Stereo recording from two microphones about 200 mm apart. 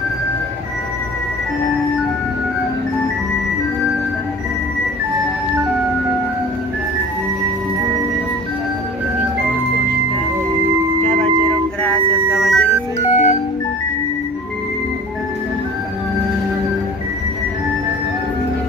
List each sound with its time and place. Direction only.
11.8 s music: 5° left (ahead or behind)
13.1 s music: 35° left (ahead or behind)